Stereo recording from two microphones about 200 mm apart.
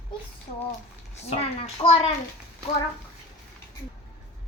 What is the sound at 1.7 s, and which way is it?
Speech, 30° left (ahead or behind).